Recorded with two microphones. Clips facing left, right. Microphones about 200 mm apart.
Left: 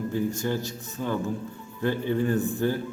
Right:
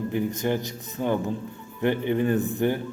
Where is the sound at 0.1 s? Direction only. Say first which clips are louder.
Right 2 dB; 20° right (ahead or behind).